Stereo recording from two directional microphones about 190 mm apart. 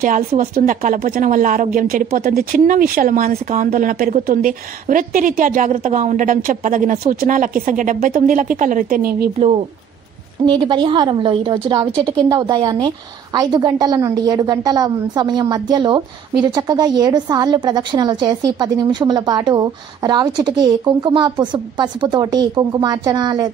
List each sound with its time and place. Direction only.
0.0 s speech: 50° right (ahead or behind)
10.4 s a woman's voice: 25° right (ahead or behind)